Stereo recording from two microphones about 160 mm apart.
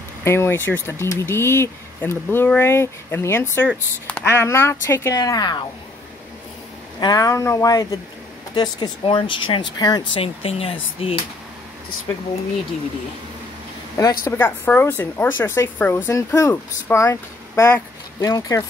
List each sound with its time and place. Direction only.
0.2 s speech: 15° left (ahead or behind)
7.0 s speech: 25° left (ahead or behind)
10.2 s speech: 35° left (ahead or behind)
14.2 s speech: 15° left (ahead or behind)